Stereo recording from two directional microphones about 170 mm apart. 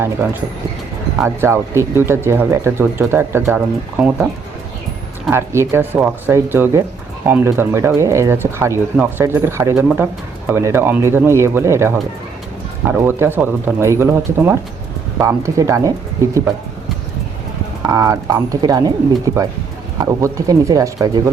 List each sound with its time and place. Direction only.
1.2 s speech: 15° right (ahead or behind)
5.3 s speech: 15° right (ahead or behind)
17.8 s speech: 20° right (ahead or behind)